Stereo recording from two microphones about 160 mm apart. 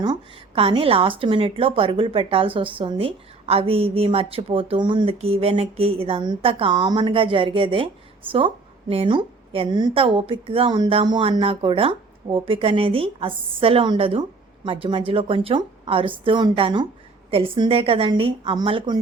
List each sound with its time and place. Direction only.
0.0 s a woman's voice: 30° right (ahead or behind)